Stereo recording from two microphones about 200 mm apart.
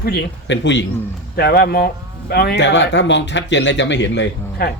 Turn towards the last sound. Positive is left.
turn(degrees=60)  # may be behind; listen again after turning